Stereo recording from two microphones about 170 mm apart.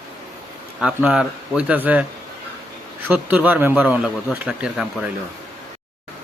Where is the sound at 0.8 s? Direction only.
5° right (ahead or behind).